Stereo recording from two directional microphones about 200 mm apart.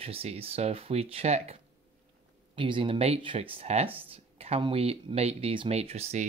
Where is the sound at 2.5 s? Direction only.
25° right (ahead or behind).